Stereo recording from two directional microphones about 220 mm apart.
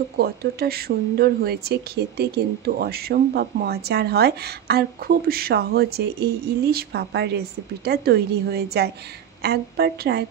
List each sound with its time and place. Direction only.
0.2 s speech: 45° right (ahead or behind)